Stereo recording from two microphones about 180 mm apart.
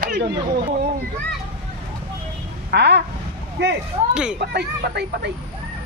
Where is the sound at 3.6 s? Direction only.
80° right.